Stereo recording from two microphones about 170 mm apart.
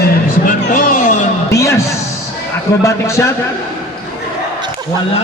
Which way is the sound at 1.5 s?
15° left (ahead or behind).